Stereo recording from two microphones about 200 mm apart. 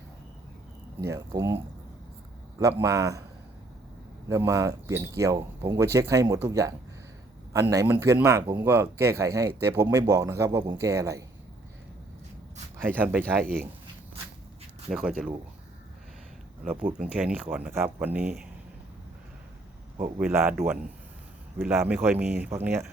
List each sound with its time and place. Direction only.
1.0 s speech: 15° right (ahead or behind)
2.6 s speech: 15° right (ahead or behind)
4.3 s speech: 15° right (ahead or behind)
12.7 s speech: 10° right (ahead or behind)
14.8 s speech: 5° right (ahead or behind)
17.0 s speech: 5° right (ahead or behind)
20.1 s speech: 10° right (ahead or behind)